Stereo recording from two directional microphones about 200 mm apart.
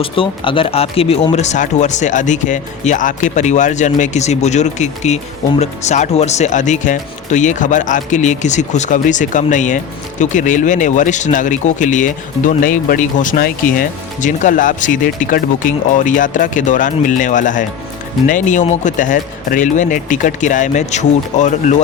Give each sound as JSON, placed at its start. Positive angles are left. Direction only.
{"t": 0.0, "sound": "speech", "side_deg": 25}